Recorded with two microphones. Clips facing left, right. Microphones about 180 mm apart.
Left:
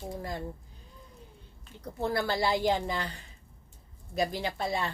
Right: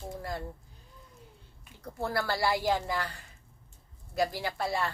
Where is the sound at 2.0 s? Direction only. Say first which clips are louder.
Left 2 dB; 20° left (ahead or behind).